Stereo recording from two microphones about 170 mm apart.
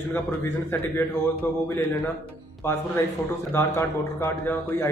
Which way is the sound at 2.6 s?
15° left (ahead or behind).